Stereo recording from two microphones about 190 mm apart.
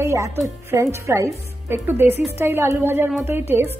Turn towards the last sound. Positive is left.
turn(degrees=-15)  # may be behind; listen again after turning